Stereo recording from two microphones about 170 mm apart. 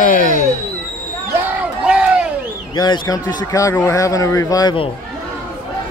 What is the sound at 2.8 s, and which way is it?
Speech, 25° left (ahead or behind).